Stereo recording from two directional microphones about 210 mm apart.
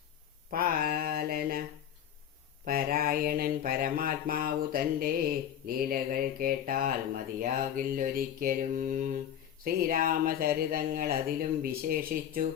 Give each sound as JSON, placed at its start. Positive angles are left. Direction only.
{"t": 0.5, "sound": "mantra", "side_deg": -45}
{"t": 2.6, "sound": "speech", "side_deg": -45}
{"t": 7.3, "sound": "mantra", "side_deg": -40}
{"t": 9.6, "sound": "speech", "side_deg": -40}